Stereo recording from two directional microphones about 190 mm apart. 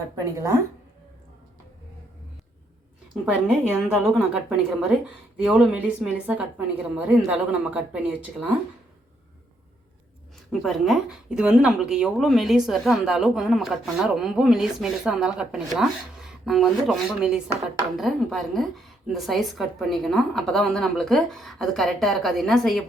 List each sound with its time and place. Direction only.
0.3 s a woman's voice: 15° right (ahead or behind)
3.2 s speech: 5° right (ahead or behind)
10.5 s speech: centre (ahead or behind)